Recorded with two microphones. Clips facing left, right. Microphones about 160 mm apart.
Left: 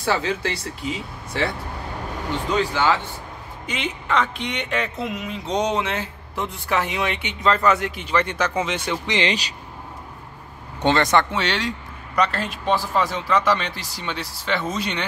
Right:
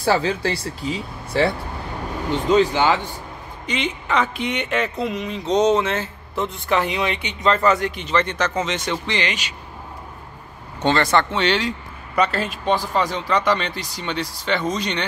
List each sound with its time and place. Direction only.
0.0 s speech: 35° right (ahead or behind)
2.5 s speech: 20° right (ahead or behind)
3.6 s speech: 5° left (ahead or behind)
9.2 s speech: 35° left (ahead or behind)
10.8 s speech: 15° left (ahead or behind)
11.3 s speech: centre (ahead or behind)